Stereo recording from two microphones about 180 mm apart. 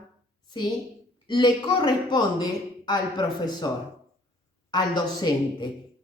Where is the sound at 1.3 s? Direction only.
25° left (ahead or behind).